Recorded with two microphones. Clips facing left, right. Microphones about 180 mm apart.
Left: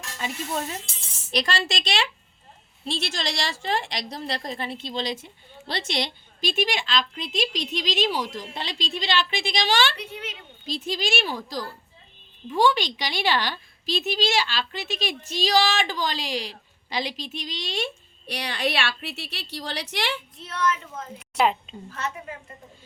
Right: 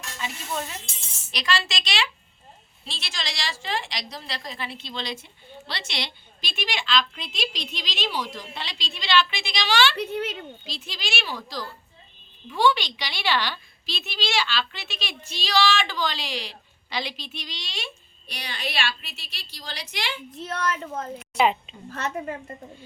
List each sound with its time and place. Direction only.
0.2 s speech: 40° left (ahead or behind)
1.3 s a woman's voice: 55° left (ahead or behind); by 20.2 s 70° left (ahead or behind)
20.4 s speech: 45° right (ahead or behind)
21.3 s a woman's voice: centre (ahead or behind)
21.8 s speech: 45° right (ahead or behind)